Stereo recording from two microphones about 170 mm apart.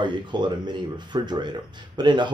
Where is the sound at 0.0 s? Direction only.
25° right (ahead or behind).